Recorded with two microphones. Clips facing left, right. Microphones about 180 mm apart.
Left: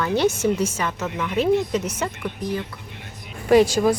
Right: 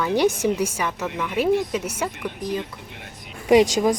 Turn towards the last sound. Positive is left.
turn(degrees=-15)  # may be behind; listen again after turning